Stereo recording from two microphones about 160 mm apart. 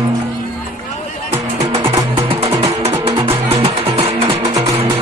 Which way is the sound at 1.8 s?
35° right (ahead or behind).